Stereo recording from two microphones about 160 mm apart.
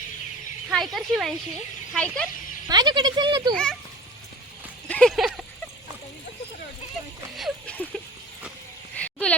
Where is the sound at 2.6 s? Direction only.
25° right (ahead or behind).